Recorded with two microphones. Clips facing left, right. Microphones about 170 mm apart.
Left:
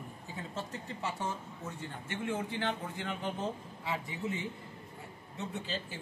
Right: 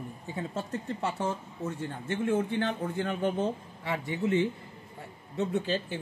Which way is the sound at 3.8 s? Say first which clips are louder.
Right 7 dB; 80° right.